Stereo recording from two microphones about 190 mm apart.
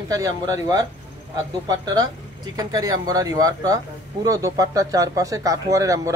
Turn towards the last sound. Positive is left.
turn(degrees=-15)  # may be behind; listen again after turning